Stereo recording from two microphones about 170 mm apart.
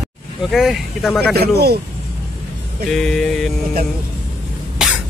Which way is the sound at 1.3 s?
70° right (ahead or behind).